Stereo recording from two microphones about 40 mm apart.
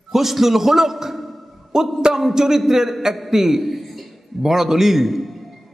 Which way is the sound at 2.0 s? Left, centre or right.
Centre.